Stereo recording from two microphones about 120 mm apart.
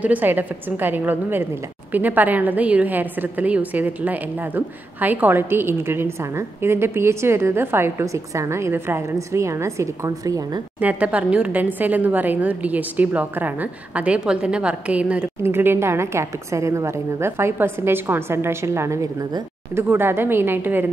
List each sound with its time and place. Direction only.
0.0 s a woman's voice: 15° right (ahead or behind); by 10.6 s 30° right (ahead or behind)
10.8 s a woman's voice: 10° right (ahead or behind)